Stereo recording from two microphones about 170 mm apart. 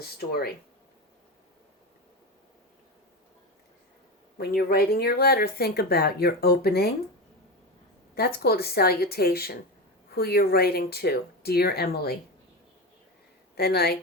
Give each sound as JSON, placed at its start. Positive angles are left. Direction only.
{"t": 0.0, "sound": "speech", "side_deg": 65}
{"t": 4.4, "sound": "speech", "side_deg": 65}
{"t": 8.1, "sound": "speech", "side_deg": 65}
{"t": 13.6, "sound": "a woman's voice", "side_deg": 70}